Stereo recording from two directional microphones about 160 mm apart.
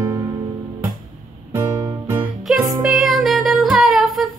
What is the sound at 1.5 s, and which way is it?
Music, 20° right (ahead or behind).